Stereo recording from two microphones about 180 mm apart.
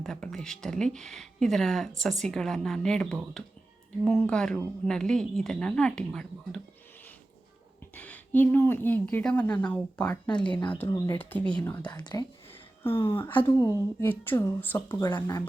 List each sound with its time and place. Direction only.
0.0 s speech: 5° left (ahead or behind)
7.9 s a woman's voice: 10° left (ahead or behind)
11.9 s speech: 25° left (ahead or behind)
14.0 s a woman's voice: 10° left (ahead or behind)
15.0 s speech: 25° left (ahead or behind)